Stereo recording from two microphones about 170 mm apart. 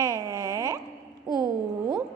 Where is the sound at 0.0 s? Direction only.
20° right (ahead or behind).